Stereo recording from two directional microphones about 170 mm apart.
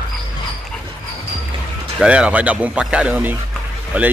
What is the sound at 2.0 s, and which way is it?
Speech, 5° right (ahead or behind).